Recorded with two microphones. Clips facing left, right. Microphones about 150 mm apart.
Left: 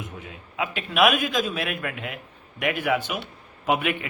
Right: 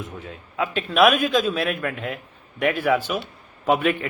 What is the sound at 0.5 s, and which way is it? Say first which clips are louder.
Speech: right 3 dB; 15° left (ahead or behind).